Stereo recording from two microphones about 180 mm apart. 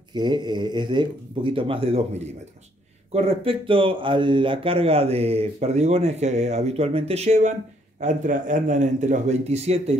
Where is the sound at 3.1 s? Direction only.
30° right (ahead or behind).